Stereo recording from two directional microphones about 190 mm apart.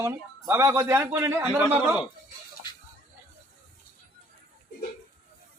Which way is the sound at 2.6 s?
20° left (ahead or behind).